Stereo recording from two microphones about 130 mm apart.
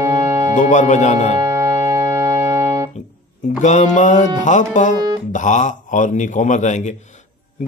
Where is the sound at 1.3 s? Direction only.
25° right (ahead or behind).